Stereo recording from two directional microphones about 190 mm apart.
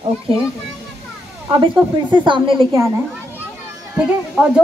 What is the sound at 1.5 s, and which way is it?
A woman's voice, 25° right (ahead or behind).